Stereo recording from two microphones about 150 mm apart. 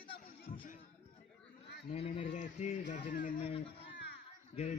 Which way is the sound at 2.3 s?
55° left (ahead or behind).